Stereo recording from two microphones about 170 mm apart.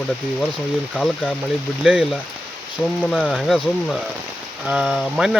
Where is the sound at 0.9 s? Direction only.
5° left (ahead or behind).